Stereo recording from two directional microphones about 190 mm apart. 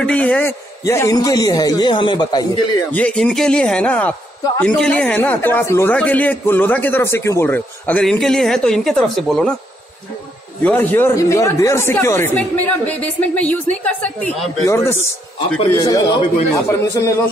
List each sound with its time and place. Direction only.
0.0 s a man's voice: 5° left (ahead or behind); by 2.6 s 25° left (ahead or behind)
2.9 s speech: 5° left (ahead or behind)
10.6 s a man's voice: 10° left (ahead or behind)